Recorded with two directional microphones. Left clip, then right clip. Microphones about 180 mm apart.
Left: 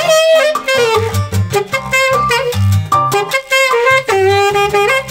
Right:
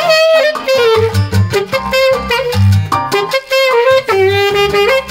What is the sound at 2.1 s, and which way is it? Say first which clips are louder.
Music: even; 50° left (ahead or behind).